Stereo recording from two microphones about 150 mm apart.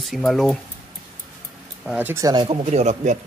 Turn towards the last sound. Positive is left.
turn(degrees=-50)  # may be behind; listen again after turning